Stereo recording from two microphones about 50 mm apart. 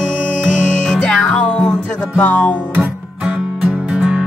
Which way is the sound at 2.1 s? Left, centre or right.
Left.